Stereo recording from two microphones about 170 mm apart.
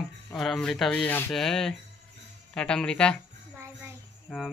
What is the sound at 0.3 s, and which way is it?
Speech, centre (ahead or behind).